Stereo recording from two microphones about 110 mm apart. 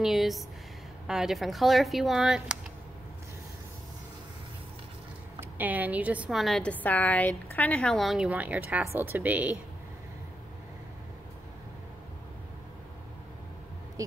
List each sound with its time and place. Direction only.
0.0 s speech: centre (ahead or behind)
5.4 s a woman's voice: 15° right (ahead or behind)
6.3 s speech: 5° left (ahead or behind)
6.7 s speech: 15° left (ahead or behind)
8.3 s speech: 15° right (ahead or behind)
14.0 s speech: 30° right (ahead or behind)